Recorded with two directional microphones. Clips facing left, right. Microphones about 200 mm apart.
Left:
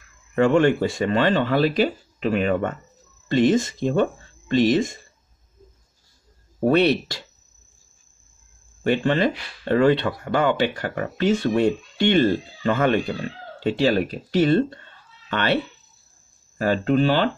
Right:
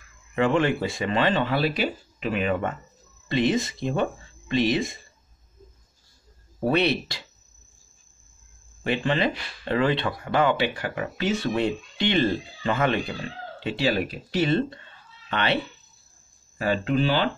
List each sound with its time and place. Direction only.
0.4 s speech: 45° left (ahead or behind)
6.6 s speech: 45° left (ahead or behind)
8.8 s speech: 45° left (ahead or behind)